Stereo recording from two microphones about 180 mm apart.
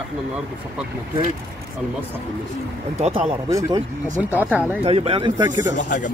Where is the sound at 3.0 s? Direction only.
30° right (ahead or behind).